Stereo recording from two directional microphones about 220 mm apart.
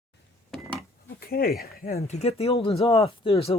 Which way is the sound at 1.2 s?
45° left (ahead or behind).